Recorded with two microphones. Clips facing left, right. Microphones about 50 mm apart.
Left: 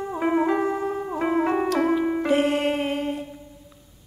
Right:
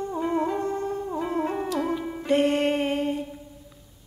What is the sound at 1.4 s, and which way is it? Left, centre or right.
Music, left.